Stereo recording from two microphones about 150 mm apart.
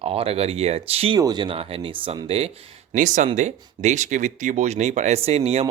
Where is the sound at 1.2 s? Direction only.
30° right (ahead or behind).